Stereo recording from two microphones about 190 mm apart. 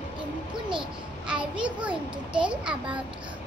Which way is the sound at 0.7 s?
5° right (ahead or behind).